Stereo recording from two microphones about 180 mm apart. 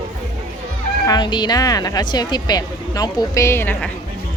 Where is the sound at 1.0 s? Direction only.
25° left (ahead or behind).